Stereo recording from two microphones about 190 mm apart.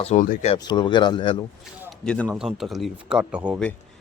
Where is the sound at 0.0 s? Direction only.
35° left (ahead or behind).